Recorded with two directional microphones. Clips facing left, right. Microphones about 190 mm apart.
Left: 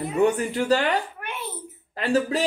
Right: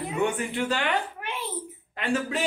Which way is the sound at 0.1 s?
40° left (ahead or behind).